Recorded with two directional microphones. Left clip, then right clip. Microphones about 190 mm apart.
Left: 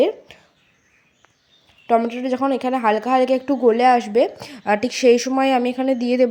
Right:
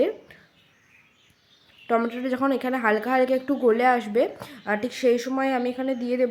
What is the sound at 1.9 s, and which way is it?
A woman's voice, 15° left (ahead or behind).